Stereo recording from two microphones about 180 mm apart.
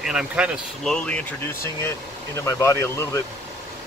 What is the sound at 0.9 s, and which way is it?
Speech, 5° left (ahead or behind).